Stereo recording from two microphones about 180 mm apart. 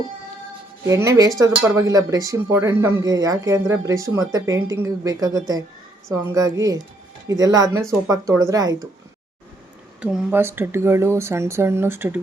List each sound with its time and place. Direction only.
0.9 s speech: 15° right (ahead or behind)
10.0 s speech: 5° right (ahead or behind)